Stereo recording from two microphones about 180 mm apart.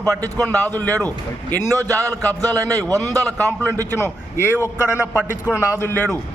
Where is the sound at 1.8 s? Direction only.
15° right (ahead or behind).